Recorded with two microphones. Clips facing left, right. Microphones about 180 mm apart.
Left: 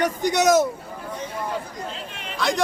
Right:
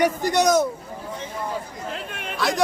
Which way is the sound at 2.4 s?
Centre (ahead or behind).